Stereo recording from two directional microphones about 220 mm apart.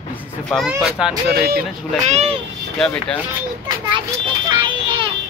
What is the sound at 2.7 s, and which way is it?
Speech, 5° left (ahead or behind).